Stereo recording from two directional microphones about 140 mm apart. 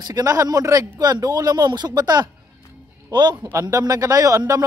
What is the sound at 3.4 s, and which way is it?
Speech, 20° right (ahead or behind).